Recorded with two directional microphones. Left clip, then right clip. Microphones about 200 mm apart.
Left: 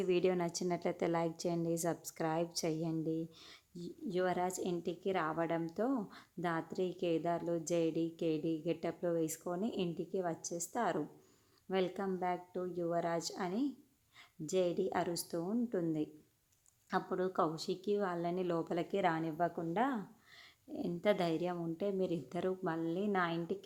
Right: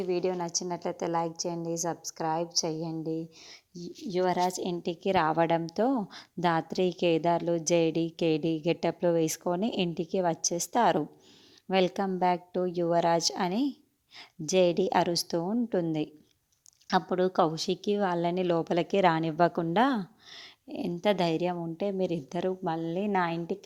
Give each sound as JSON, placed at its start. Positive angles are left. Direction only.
{"t": 0.0, "sound": "a woman's voice", "side_deg": 0}
{"t": 0.4, "sound": "a woman's voice", "side_deg": 10}
{"t": 2.6, "sound": "a woman's voice", "side_deg": -10}
{"t": 3.8, "sound": "a woman's voice", "side_deg": -30}